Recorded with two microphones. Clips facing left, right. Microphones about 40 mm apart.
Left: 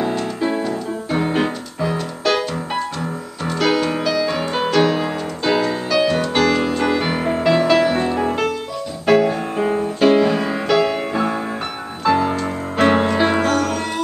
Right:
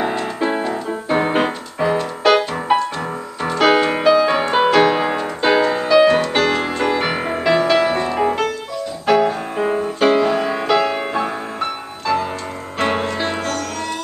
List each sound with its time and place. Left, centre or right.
0.5 s music: right; by 7.8 s centre
9.0 s music: centre
12.1 s music: centre